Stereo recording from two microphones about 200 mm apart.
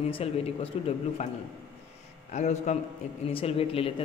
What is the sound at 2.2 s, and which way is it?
A man's voice, 35° left (ahead or behind).